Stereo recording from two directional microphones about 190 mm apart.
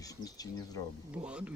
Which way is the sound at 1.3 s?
5° right (ahead or behind).